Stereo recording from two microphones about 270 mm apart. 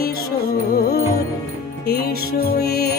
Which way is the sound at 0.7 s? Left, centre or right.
Left.